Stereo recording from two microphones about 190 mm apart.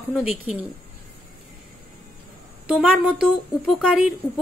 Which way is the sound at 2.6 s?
5° right (ahead or behind).